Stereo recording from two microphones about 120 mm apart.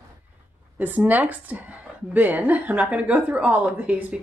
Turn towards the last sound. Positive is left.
turn(degrees=-10)  # may be behind; listen again after turning